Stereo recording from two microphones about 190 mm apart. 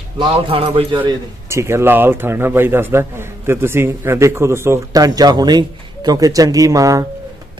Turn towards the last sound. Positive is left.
turn(degrees=-15)  # may be behind; listen again after turning